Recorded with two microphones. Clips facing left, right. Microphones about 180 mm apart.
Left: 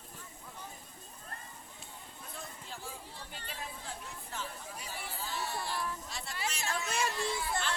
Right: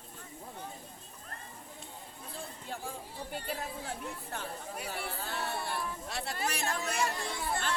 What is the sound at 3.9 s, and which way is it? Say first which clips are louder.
Chatter: right 5 dB; 60° right (ahead or behind).